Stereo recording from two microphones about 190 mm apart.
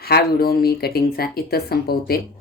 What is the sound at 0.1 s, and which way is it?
A woman's voice, 55° left (ahead or behind).